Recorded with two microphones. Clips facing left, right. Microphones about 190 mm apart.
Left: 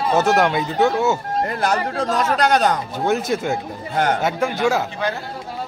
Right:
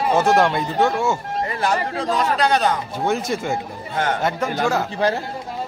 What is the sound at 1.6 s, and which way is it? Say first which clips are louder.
A man's voice: right 1 dB; 45° left (ahead or behind).